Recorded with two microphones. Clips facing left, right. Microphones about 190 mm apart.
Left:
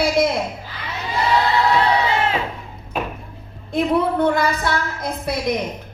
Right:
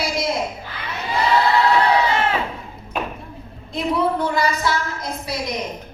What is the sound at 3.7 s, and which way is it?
A woman's voice, 55° left (ahead or behind).